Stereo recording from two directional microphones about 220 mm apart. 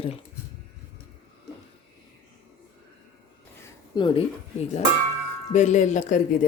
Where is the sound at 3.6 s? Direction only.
20° left (ahead or behind).